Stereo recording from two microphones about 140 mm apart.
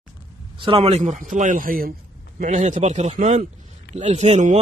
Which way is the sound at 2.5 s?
55° right (ahead or behind).